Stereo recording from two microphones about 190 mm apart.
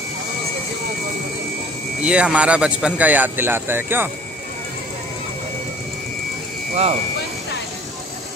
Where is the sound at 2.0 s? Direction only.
5° right (ahead or behind).